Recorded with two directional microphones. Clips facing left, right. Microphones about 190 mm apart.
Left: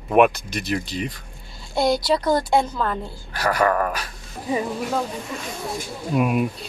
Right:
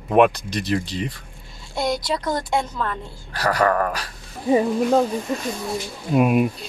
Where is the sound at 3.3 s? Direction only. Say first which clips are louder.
Right 1 dB; 35° right (ahead or behind).